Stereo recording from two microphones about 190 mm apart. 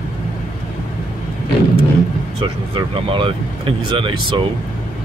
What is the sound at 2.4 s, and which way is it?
Speech, 25° right (ahead or behind).